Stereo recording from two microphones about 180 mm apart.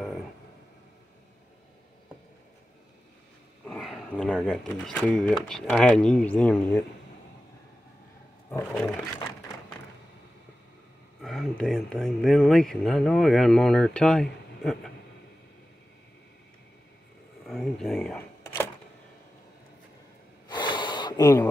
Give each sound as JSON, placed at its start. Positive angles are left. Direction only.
{"t": 3.6, "sound": "speech", "side_deg": 5}
{"t": 8.5, "sound": "roaring cats", "side_deg": 10}
{"t": 11.1, "sound": "speech", "side_deg": 0}
{"t": 17.5, "sound": "camera", "side_deg": 0}
{"t": 20.4, "sound": "gasp", "side_deg": 25}